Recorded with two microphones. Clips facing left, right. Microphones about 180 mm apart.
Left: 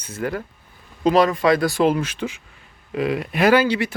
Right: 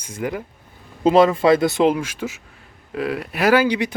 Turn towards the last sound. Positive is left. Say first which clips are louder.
# even
turn(degrees=-15)  # may be behind; listen again after turning